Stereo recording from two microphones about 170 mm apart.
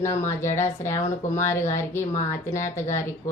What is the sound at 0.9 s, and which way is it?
Speech, 45° left (ahead or behind).